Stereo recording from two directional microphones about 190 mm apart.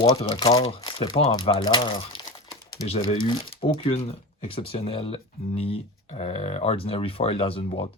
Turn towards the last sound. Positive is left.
turn(degrees=30)  # may be behind; listen again after turning